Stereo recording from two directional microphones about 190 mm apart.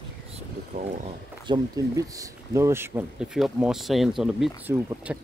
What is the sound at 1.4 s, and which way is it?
Speech, 20° right (ahead or behind).